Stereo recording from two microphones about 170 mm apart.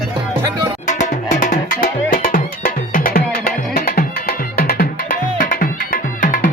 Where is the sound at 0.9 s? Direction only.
45° left (ahead or behind).